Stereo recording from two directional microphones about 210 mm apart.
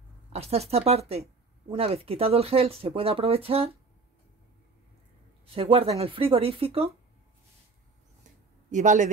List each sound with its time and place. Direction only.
0.3 s speech: 30° right (ahead or behind)
5.5 s speech: 25° right (ahead or behind)
8.6 s speech: 35° right (ahead or behind)